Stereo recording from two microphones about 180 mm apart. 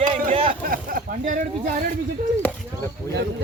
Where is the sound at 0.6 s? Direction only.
50° right (ahead or behind).